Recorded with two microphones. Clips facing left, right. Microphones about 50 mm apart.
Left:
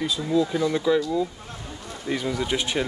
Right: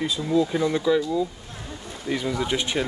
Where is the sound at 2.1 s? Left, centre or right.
Centre.